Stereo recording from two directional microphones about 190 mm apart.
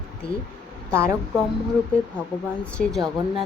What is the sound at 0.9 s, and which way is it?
Speech, 15° right (ahead or behind).